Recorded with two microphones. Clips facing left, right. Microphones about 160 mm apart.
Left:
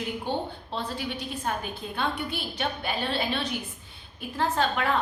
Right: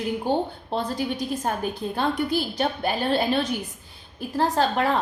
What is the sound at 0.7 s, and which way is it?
A woman's voice, 45° right (ahead or behind).